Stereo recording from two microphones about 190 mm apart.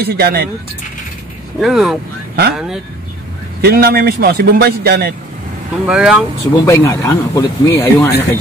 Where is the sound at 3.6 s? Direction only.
55° right (ahead or behind).